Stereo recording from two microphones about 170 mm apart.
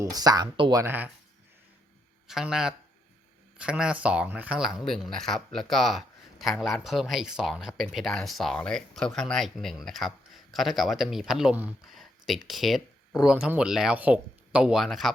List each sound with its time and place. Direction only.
0.0 s speech: 20° right (ahead or behind)
0.8 s speech: 10° right (ahead or behind)
2.2 s speech: 5° right (ahead or behind)